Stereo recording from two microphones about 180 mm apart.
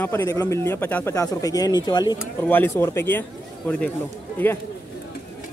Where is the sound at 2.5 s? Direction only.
10° left (ahead or behind).